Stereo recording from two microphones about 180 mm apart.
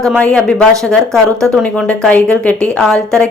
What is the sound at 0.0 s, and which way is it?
Speech, 5° left (ahead or behind).